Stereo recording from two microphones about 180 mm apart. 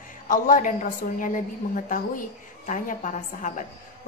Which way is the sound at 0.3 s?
45° left (ahead or behind).